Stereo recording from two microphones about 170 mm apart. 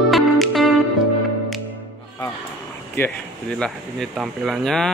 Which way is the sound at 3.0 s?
15° left (ahead or behind).